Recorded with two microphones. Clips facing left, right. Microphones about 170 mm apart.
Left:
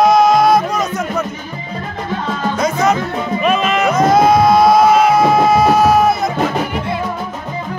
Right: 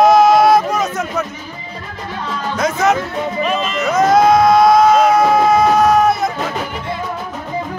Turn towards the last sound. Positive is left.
turn(degrees=0)  # may be behind; listen again after turning